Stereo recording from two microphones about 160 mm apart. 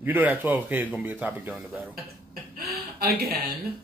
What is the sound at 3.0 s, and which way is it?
Speech, 75° right (ahead or behind).